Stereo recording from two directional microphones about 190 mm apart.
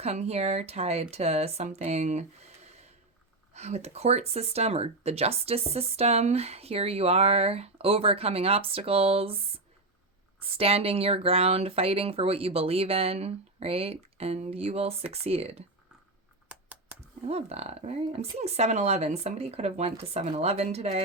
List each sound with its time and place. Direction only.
0.0 s speech: 35° right (ahead or behind)
16.5 s typing: 5° right (ahead or behind)
17.2 s speech: 35° right (ahead or behind)